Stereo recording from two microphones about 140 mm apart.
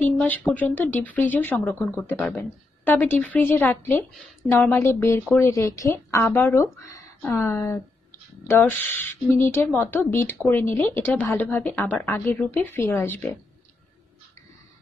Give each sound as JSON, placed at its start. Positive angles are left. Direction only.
{"t": 0.0, "sound": "speech", "side_deg": 10}
{"t": 0.7, "sound": "speech", "side_deg": 15}